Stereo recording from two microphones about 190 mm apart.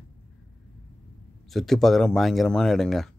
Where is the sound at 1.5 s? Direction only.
Centre (ahead or behind).